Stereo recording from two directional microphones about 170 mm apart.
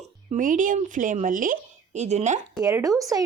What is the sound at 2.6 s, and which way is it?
Speech, 20° right (ahead or behind).